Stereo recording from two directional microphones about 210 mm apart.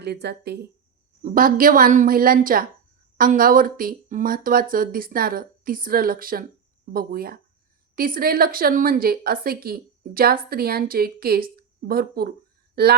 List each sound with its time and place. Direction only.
0.0 s a woman's voice: 50° right (ahead or behind)
1.2 s a woman's voice: 40° right (ahead or behind)